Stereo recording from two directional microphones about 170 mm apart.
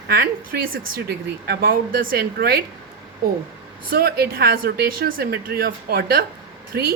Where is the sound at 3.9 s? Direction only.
65° right (ahead or behind).